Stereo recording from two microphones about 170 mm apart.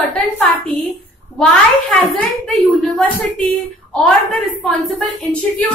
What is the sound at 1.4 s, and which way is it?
A child's voice, 5° left (ahead or behind).